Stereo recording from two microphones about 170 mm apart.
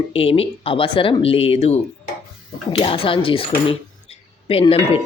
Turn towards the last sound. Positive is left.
turn(degrees=35)  # may be behind; listen again after turning